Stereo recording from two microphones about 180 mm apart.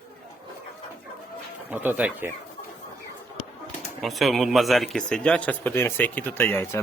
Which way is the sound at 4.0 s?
Centre (ahead or behind).